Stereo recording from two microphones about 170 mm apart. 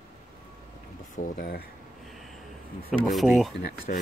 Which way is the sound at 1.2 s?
60° left (ahead or behind).